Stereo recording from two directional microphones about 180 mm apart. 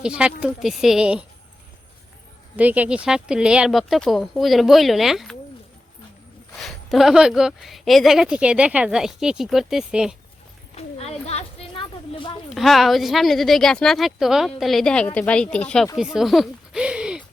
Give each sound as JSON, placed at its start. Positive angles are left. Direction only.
{"t": 0.0, "sound": "speech", "side_deg": -5}
{"t": 2.6, "sound": "speech", "side_deg": -10}
{"t": 6.6, "sound": "speech", "side_deg": 0}
{"t": 10.8, "sound": "a sound", "side_deg": 35}
{"t": 12.5, "sound": "speech", "side_deg": 0}